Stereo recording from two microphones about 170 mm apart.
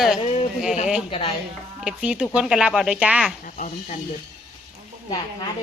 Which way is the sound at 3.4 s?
45° left (ahead or behind).